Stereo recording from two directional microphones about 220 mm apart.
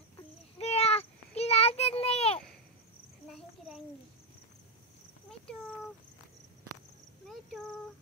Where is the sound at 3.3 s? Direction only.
Centre (ahead or behind).